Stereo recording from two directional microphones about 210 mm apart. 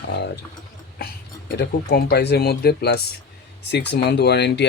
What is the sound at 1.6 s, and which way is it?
Speech, 50° left (ahead or behind).